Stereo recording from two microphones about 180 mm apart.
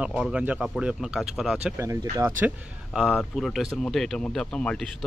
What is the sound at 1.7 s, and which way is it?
Speech, 15° right (ahead or behind).